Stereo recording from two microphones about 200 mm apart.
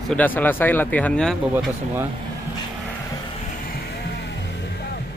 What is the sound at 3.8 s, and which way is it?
Music, 55° left (ahead or behind).